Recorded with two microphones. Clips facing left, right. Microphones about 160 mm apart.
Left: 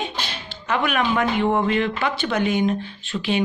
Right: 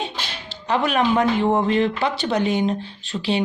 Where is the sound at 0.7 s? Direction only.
35° right (ahead or behind).